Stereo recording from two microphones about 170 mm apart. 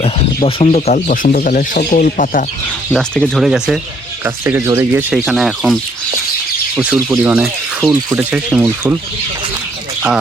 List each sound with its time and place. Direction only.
0.4 s speech: 40° left (ahead or behind)
1.0 s speech: 50° left (ahead or behind)
2.9 s speech: 5° left (ahead or behind)
4.2 s speech: 15° right (ahead or behind)
5.1 s speech: 5° right (ahead or behind)
7.1 s speech: 10° right (ahead or behind)